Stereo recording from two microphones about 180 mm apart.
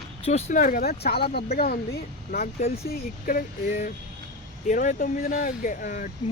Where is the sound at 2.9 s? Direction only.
50° left (ahead or behind).